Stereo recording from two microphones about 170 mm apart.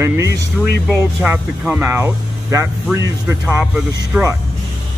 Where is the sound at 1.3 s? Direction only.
10° right (ahead or behind).